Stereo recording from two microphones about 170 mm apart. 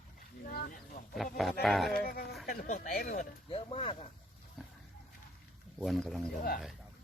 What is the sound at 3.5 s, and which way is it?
Speech, 35° left (ahead or behind).